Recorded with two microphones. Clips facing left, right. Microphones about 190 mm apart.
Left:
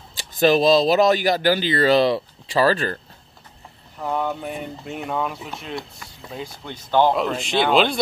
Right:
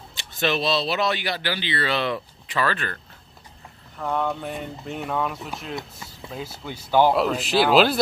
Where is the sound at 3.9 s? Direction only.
10° left (ahead or behind).